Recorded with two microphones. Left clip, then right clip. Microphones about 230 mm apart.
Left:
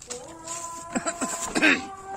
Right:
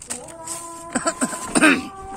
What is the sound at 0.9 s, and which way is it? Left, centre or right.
Cough, centre.